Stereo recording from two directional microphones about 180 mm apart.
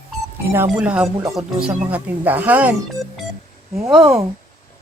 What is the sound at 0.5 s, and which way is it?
A woman's voice, 10° right (ahead or behind).